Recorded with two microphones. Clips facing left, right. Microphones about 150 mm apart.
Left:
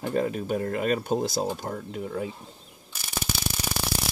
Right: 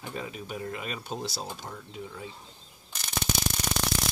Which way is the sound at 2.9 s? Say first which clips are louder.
Even; 10° left (ahead or behind).